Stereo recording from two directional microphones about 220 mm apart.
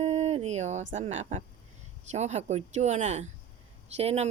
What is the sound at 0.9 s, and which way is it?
Speech, 30° right (ahead or behind).